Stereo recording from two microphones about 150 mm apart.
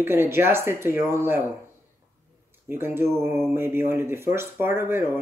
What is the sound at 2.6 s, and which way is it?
Speech, 15° right (ahead or behind).